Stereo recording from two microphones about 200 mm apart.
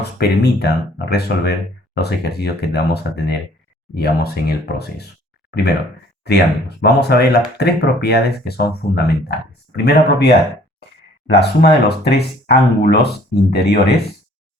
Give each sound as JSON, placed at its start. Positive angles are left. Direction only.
{"t": 0.2, "sound": "speech", "side_deg": 55}
{"t": 6.2, "sound": "speech", "side_deg": 55}